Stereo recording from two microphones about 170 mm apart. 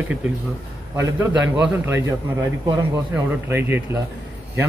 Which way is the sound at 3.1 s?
10° right (ahead or behind).